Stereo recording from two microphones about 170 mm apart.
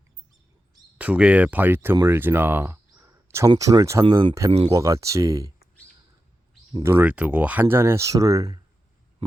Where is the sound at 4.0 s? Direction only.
30° right (ahead or behind).